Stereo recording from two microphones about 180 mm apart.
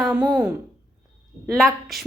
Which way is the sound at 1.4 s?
Centre (ahead or behind).